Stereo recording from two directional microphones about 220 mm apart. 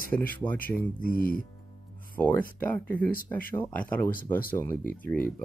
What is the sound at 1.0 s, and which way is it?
Speech, 40° left (ahead or behind).